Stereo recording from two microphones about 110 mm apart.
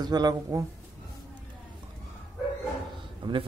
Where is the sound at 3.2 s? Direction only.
50° right (ahead or behind).